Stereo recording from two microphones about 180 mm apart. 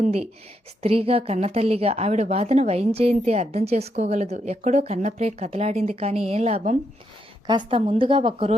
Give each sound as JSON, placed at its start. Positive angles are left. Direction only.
{"t": 0.8, "sound": "a woman's voice", "side_deg": -35}
{"t": 7.4, "sound": "a woman's voice", "side_deg": -25}